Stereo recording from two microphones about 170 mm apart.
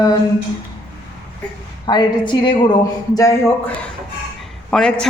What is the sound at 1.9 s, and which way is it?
Speech, 25° left (ahead or behind).